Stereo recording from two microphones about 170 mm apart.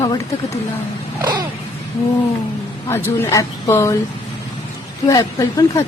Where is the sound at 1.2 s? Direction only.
25° right (ahead or behind).